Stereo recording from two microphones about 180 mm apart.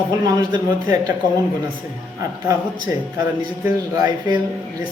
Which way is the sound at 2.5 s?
25° right (ahead or behind).